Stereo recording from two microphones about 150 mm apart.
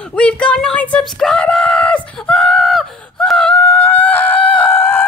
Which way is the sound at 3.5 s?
15° left (ahead or behind).